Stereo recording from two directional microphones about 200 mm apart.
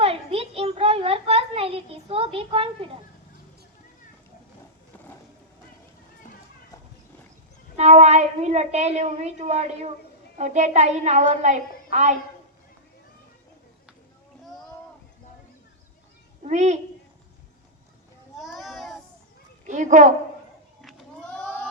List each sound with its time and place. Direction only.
0.0 s a sound: 30° right (ahead or behind)
7.8 s a woman's voice: 35° right (ahead or behind)
16.4 s a child's voice: 35° right (ahead or behind)
18.3 s children playing: centre (ahead or behind)
19.6 s a woman's voice: 40° right (ahead or behind)
21.3 s a sound: 5° left (ahead or behind)